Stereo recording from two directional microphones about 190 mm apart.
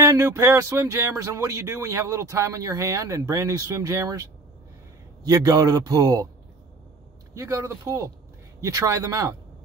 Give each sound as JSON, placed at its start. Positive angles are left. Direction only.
{"t": 0.0, "sound": "a man's voice", "side_deg": -15}
{"t": 7.3, "sound": "speech", "side_deg": -15}